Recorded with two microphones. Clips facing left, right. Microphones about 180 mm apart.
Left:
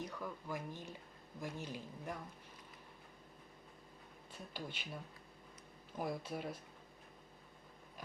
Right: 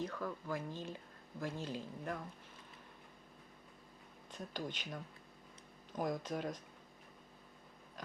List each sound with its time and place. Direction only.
0.0 s speech: 15° left (ahead or behind)
4.3 s speech: 10° left (ahead or behind)
6.0 s speech: 5° left (ahead or behind)